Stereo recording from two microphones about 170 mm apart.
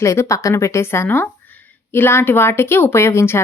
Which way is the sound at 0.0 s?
15° left (ahead or behind).